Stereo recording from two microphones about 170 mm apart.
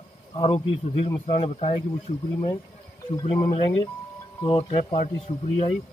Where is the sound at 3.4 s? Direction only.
35° left (ahead or behind).